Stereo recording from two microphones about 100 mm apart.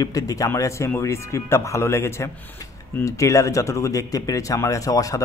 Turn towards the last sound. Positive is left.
turn(degrees=35)  # may be behind; listen again after turning